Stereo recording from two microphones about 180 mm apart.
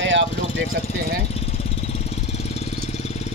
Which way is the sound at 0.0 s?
90° right.